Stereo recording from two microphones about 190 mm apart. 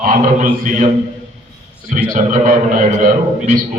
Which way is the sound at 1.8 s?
45° right (ahead or behind).